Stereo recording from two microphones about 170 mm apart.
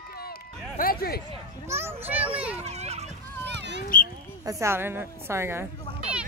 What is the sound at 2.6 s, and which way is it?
Children playing, 40° right (ahead or behind).